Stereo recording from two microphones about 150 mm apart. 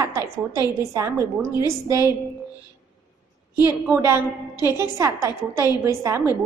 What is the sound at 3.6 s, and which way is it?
A woman's voice, 15° right (ahead or behind).